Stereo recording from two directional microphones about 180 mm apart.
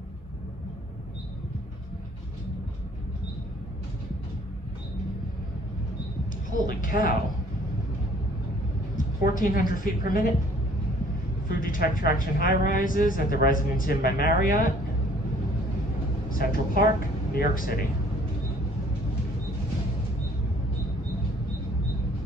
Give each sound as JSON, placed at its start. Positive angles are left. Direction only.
{"t": 6.7, "sound": "speech", "side_deg": 50}
{"t": 8.9, "sound": "a woman's voice", "side_deg": 50}
{"t": 11.4, "sound": "speech", "side_deg": 50}
{"t": 16.3, "sound": "speech", "side_deg": 50}